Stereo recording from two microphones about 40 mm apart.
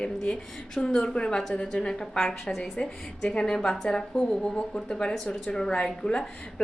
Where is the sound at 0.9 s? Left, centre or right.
Centre.